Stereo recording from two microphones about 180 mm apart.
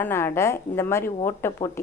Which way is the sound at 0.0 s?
15° left (ahead or behind).